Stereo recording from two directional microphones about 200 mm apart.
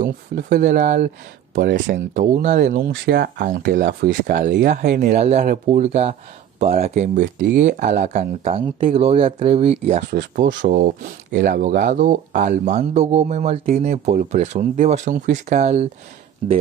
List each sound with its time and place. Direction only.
0.0 s speech: 45° right (ahead or behind)
3.1 s speech: 50° right (ahead or behind)
5.1 s speech: 35° right (ahead or behind)